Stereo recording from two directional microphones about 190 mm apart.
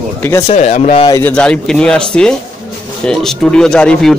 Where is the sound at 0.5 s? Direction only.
35° left (ahead or behind).